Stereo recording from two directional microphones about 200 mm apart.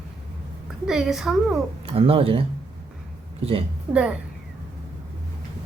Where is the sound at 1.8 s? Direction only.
30° right (ahead or behind).